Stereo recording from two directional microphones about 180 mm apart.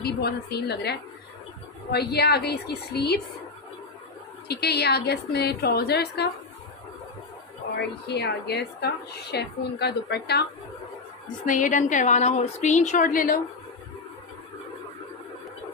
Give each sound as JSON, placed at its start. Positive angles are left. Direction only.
{"t": 0.0, "sound": "a woman's voice", "side_deg": 65}
{"t": 4.5, "sound": "a woman's voice", "side_deg": 65}
{"t": 7.7, "sound": "a woman's voice", "side_deg": 65}
{"t": 11.4, "sound": "a woman's voice", "side_deg": 45}